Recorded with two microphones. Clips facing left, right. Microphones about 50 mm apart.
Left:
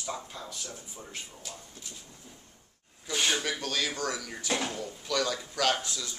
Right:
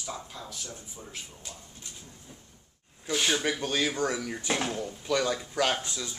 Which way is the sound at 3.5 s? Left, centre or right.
Centre.